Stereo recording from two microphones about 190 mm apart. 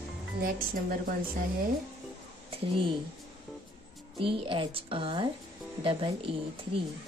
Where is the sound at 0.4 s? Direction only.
50° right (ahead or behind).